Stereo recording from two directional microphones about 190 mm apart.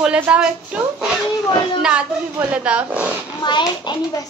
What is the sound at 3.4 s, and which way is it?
Speech, 25° left (ahead or behind).